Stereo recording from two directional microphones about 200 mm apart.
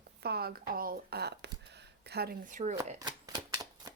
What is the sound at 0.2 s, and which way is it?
Speech, 50° right (ahead or behind).